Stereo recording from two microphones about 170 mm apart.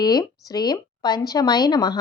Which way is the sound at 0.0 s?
25° left (ahead or behind).